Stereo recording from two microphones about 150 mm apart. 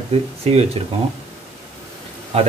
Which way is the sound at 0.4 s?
45° right (ahead or behind).